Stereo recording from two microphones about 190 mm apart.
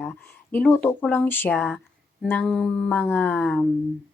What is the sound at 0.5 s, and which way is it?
Speech, 10° left (ahead or behind).